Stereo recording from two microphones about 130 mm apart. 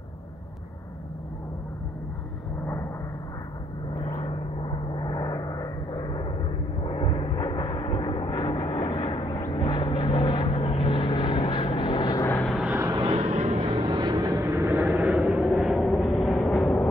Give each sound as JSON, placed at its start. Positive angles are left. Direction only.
{"t": 2.6, "sound": "vehicle", "side_deg": 20}
{"t": 4.0, "sound": "vehicle", "side_deg": 50}
{"t": 12.2, "sound": "vehicle", "side_deg": 20}
{"t": 13.0, "sound": "vehicle", "side_deg": -50}
{"t": 13.8, "sound": "vehicle", "side_deg": -35}